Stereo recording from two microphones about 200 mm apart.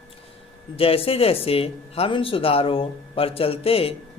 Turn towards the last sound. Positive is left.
turn(degrees=30)  # may be behind; listen again after turning